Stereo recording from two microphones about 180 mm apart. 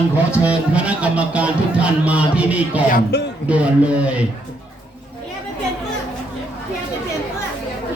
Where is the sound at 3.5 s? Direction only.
5° right (ahead or behind).